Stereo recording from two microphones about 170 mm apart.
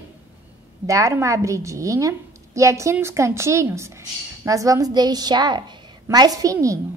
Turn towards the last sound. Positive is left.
turn(degrees=-20)  # may be behind; listen again after turning